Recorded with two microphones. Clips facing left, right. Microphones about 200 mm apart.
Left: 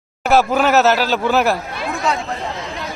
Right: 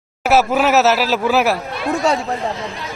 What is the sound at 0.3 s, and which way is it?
Speech, 5° right (ahead or behind).